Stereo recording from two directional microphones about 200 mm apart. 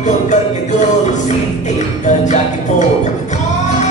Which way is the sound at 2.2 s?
35° left (ahead or behind).